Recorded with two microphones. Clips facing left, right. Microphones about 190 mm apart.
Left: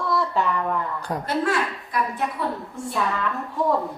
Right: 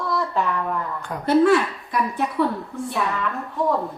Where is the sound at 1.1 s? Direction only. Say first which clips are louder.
Left 6 dB; 40° left (ahead or behind).